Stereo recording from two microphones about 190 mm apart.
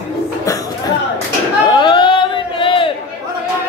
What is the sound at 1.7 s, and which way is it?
Crowd, 25° left (ahead or behind).